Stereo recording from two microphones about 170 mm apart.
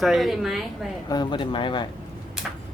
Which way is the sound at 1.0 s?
25° left (ahead or behind).